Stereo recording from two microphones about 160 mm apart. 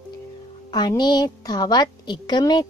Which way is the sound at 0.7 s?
25° left (ahead or behind).